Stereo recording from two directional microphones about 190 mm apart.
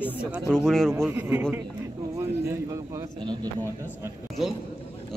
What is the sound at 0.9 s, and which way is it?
Speech, 15° right (ahead or behind).